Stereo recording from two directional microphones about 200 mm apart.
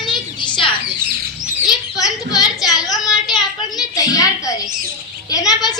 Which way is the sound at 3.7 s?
20° left (ahead or behind).